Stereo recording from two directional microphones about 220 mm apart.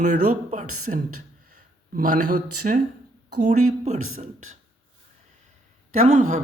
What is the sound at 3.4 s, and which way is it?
Speech, 30° right (ahead or behind).